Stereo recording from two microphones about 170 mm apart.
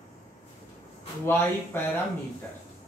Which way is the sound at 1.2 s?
10° left (ahead or behind).